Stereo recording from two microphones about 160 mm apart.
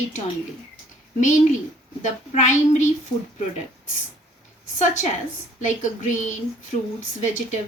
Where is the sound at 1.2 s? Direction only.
50° left (ahead or behind).